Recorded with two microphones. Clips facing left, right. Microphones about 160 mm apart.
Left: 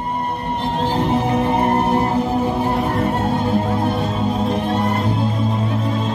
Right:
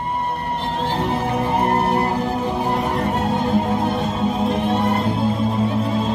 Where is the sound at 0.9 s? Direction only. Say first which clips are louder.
Left 4 dB; 10° left (ahead or behind).